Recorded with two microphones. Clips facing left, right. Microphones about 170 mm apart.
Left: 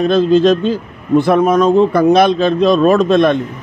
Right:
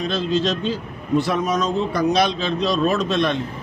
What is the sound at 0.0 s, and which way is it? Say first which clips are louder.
Speech: left 11 dB; 55° left (ahead or behind).